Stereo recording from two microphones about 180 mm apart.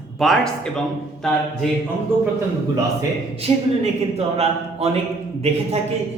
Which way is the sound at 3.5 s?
35° right (ahead or behind).